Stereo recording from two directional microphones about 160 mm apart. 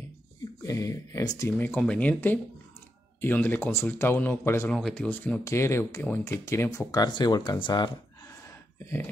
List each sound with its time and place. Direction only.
0.6 s speech: 20° left (ahead or behind)
1.6 s speech: 10° left (ahead or behind); by 7.9 s 30° left (ahead or behind)